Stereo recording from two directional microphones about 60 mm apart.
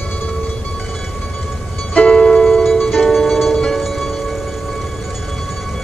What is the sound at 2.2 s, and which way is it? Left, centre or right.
Music, centre.